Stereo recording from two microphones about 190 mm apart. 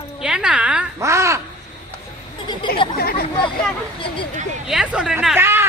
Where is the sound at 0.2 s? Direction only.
5° right (ahead or behind).